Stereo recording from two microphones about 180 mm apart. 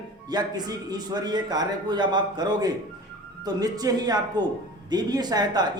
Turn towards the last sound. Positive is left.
turn(degrees=-20)  # may be behind; listen again after turning